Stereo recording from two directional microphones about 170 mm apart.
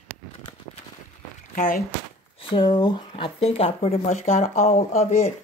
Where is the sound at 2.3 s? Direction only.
30° left (ahead or behind).